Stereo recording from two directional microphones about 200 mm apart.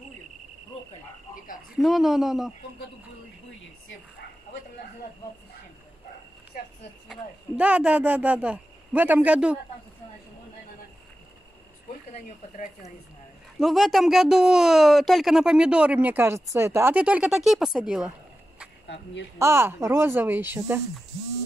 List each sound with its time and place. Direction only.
1.8 s speech: centre (ahead or behind)
6.5 s a woman's voice: 45° left (ahead or behind)
7.1 s speech: 5° right (ahead or behind)
13.6 s speech: centre (ahead or behind)
19.3 s speech: 15° right (ahead or behind)